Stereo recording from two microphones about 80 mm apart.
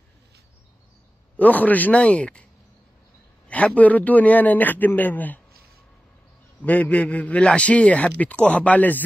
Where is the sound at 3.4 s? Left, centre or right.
Centre.